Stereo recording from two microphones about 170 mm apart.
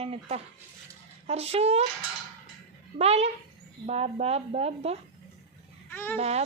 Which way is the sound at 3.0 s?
40° right (ahead or behind).